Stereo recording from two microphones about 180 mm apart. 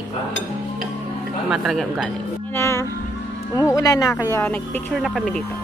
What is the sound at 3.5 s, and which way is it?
Speech, 20° left (ahead or behind).